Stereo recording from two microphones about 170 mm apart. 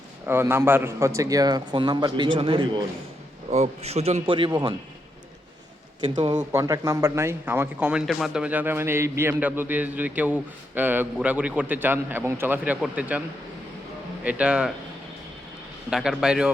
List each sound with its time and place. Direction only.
0.3 s a man's voice: 15° right (ahead or behind); by 2.8 s 30° right (ahead or behind)
3.5 s a man's voice: 40° right (ahead or behind)
6.1 s speech: 25° right (ahead or behind); by 13.2 s 10° right (ahead or behind)
14.3 s speech: 5° right (ahead or behind)
15.9 s a man's voice: 5° right (ahead or behind)